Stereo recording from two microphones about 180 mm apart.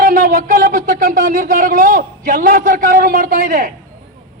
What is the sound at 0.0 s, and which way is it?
A man's voice, 50° right (ahead or behind).